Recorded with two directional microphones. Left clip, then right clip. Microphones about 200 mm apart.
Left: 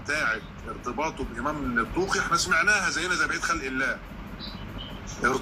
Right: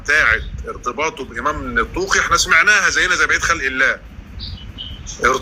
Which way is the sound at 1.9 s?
55° right (ahead or behind).